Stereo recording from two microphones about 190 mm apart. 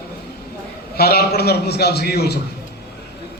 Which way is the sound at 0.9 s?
55° left (ahead or behind).